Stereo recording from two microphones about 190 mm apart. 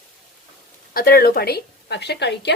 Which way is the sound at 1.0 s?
50° left (ahead or behind).